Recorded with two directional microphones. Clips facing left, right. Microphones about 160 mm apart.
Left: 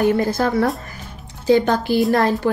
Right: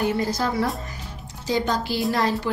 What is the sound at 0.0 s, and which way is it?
A woman's voice, 55° left (ahead or behind).